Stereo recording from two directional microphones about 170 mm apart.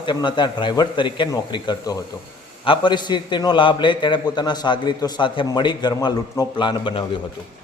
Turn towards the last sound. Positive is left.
turn(degrees=30)  # may be behind; listen again after turning